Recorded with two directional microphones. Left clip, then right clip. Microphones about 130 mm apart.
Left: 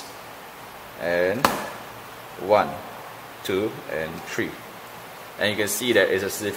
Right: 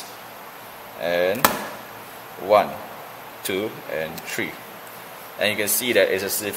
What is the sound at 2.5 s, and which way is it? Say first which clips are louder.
Speech: right 2 dB; 15° left (ahead or behind).